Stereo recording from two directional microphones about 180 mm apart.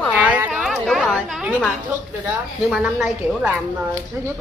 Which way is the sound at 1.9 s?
10° right (ahead or behind).